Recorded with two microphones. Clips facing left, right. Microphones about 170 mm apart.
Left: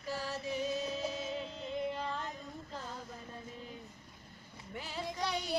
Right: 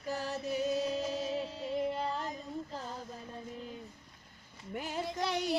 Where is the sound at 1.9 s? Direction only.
35° right (ahead or behind).